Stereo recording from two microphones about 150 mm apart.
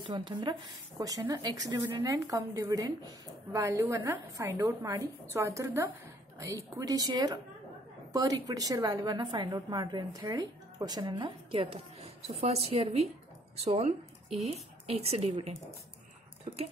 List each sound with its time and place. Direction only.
0.0 s a woman's voice: 30° right (ahead or behind)